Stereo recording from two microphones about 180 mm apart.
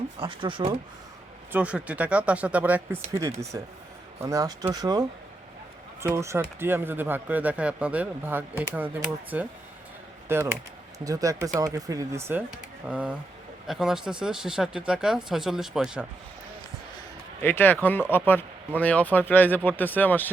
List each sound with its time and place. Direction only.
0.2 s speech: 30° right (ahead or behind)
1.5 s speech: 5° right (ahead or behind)
17.4 s speech: 10° left (ahead or behind)